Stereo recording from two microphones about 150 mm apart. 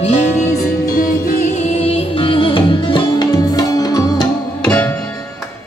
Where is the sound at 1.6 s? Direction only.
45° left (ahead or behind); by 4.2 s 25° left (ahead or behind).